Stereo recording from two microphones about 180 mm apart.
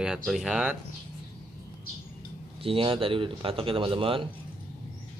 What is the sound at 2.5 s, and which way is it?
A man's voice, 30° right (ahead or behind).